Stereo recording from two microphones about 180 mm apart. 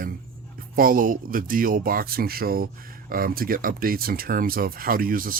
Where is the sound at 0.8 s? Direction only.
50° right (ahead or behind).